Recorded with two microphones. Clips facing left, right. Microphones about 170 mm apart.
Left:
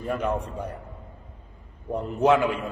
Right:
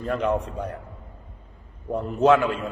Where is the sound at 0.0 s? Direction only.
10° left (ahead or behind).